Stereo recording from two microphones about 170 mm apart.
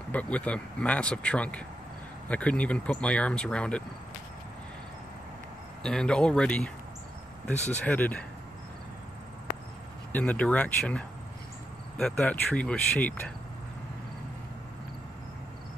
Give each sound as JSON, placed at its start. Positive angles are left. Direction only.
{"t": 0.1, "sound": "speech", "side_deg": 10}
{"t": 5.8, "sound": "speech", "side_deg": 5}
{"t": 7.7, "sound": "speech", "side_deg": 10}
{"t": 10.1, "sound": "speech", "side_deg": 10}